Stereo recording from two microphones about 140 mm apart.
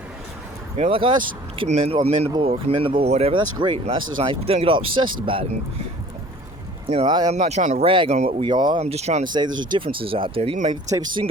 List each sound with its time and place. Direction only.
0.8 s speech: 40° right (ahead or behind)
6.8 s speech: 45° right (ahead or behind)
7.9 s speech: 40° right (ahead or behind)
8.1 s speech: 55° right (ahead or behind)
8.4 s speech: 35° right (ahead or behind)
8.8 s speech: 50° right (ahead or behind)
9.2 s speech: 30° right (ahead or behind)